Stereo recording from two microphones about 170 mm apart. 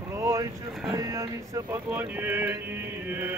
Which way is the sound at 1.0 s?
20° right (ahead or behind).